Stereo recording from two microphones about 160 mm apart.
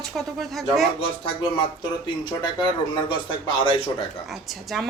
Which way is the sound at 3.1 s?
30° left (ahead or behind).